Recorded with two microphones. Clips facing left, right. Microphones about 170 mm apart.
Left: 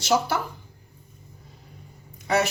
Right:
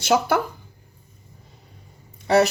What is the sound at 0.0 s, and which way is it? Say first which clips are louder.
Speech: right 3 dB; 55° right (ahead or behind).